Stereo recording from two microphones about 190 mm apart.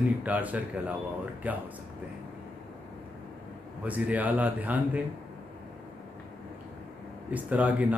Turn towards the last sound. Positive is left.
turn(degrees=-10)  # may be behind; listen again after turning